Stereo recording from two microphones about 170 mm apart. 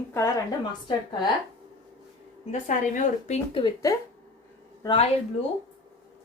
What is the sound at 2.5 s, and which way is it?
A woman's voice, 50° left (ahead or behind).